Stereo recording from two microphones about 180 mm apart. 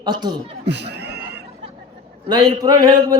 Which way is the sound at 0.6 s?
70° right (ahead or behind).